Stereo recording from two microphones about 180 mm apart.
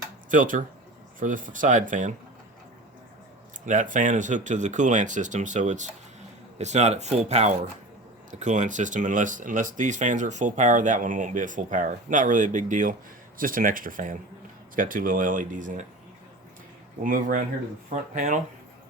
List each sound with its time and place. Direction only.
0.3 s speech: 45° right (ahead or behind)
3.7 s speech: 45° right (ahead or behind)
17.0 s speech: 50° right (ahead or behind)